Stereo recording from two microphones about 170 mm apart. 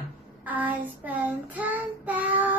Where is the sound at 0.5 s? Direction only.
10° right (ahead or behind).